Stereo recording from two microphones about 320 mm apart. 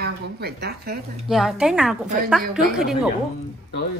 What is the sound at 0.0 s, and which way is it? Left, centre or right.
Speech, right.